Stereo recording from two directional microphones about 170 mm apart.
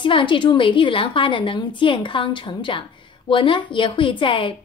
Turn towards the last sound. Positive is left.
turn(degrees=30)  # may be behind; listen again after turning